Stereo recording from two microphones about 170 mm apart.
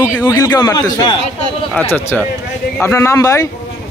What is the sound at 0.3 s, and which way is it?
A man's voice, 20° left (ahead or behind).